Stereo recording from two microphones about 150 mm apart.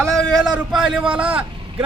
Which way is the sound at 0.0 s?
Centre (ahead or behind).